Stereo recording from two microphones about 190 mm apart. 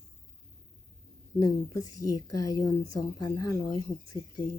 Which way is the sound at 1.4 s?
20° left (ahead or behind).